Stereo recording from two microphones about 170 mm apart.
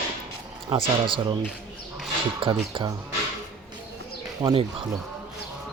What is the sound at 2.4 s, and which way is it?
Speech, 30° right (ahead or behind).